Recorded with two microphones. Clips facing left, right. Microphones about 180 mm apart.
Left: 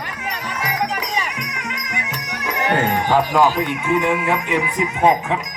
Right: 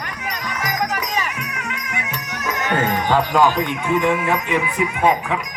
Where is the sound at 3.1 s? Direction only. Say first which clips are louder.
Even; 10° left (ahead or behind).